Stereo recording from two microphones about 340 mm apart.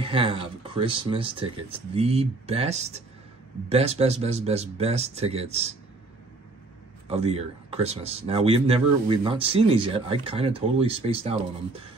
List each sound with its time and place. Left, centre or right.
0.0 s speech: centre
7.1 s speech: centre